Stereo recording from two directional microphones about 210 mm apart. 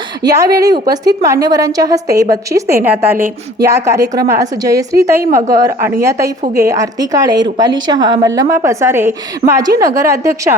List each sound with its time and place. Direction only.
0.2 s a woman's voice: 15° right (ahead or behind)